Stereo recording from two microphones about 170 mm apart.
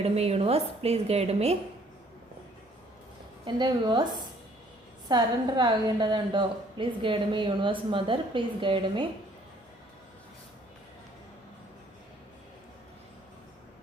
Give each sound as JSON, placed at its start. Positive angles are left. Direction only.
{"t": 0.0, "sound": "a woman's voice", "side_deg": -35}
{"t": 3.4, "sound": "a woman's voice", "side_deg": -25}
{"t": 5.0, "sound": "a woman's voice", "side_deg": -25}